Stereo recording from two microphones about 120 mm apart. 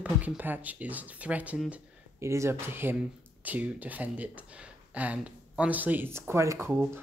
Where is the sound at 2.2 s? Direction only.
25° right (ahead or behind).